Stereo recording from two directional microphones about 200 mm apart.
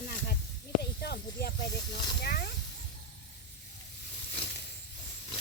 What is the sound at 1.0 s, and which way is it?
Speech, 55° left (ahead or behind).